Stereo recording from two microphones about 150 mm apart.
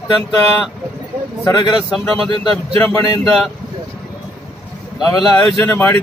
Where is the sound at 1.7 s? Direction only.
Centre (ahead or behind).